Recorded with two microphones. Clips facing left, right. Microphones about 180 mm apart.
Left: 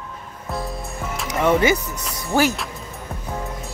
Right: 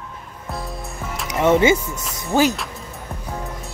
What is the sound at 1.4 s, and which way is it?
Speech, 20° right (ahead or behind).